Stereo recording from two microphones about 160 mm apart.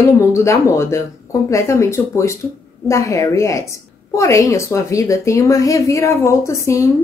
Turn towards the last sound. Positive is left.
turn(degrees=20)  # may be behind; listen again after turning